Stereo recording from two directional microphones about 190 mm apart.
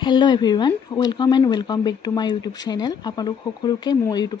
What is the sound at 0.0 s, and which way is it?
Speech, 25° left (ahead or behind).